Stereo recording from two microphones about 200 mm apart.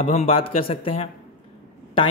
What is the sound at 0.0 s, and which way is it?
Speech, 30° left (ahead or behind).